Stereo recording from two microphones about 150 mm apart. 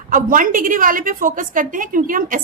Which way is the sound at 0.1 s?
65° right (ahead or behind).